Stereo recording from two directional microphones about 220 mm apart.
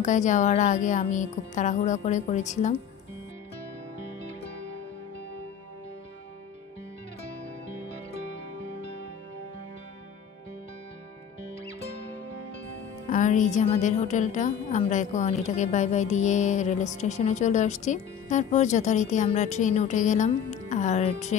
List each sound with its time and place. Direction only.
0.0 s a woman's voice: 35° left (ahead or behind)
13.1 s a woman's voice: 35° left (ahead or behind)